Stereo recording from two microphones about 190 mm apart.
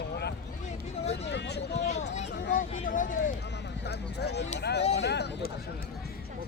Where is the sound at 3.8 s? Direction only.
60° left (ahead or behind).